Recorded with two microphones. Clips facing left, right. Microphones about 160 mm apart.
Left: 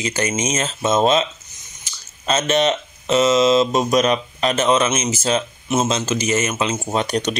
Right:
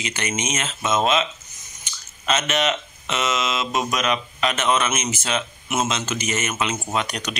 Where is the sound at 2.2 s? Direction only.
35° left (ahead or behind).